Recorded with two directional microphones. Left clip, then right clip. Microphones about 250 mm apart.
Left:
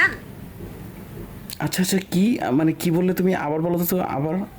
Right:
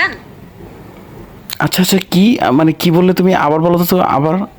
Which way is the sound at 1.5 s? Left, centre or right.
Centre.